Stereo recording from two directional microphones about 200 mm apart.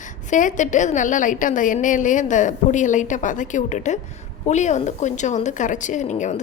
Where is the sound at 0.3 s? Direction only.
40° left (ahead or behind).